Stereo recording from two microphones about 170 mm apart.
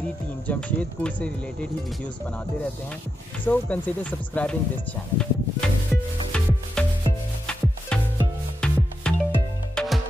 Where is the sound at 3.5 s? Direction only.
10° left (ahead or behind).